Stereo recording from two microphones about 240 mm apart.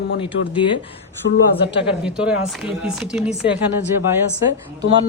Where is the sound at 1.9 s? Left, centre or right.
Centre.